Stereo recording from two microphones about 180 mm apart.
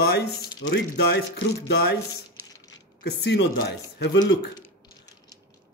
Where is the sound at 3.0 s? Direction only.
70° left (ahead or behind).